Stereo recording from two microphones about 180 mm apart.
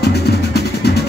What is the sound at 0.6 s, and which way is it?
Music, 65° left (ahead or behind).